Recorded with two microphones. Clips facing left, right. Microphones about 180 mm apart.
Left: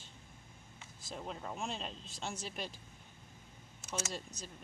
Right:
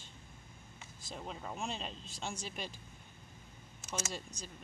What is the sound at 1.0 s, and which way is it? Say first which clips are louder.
Speech: left 1 dB; centre (ahead or behind).